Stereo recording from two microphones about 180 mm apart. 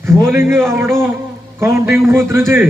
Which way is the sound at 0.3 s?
15° right (ahead or behind).